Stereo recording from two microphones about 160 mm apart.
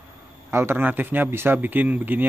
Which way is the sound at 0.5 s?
15° right (ahead or behind).